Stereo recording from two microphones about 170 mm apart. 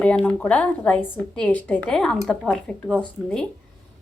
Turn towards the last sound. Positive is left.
turn(degrees=5)  # may be behind; listen again after turning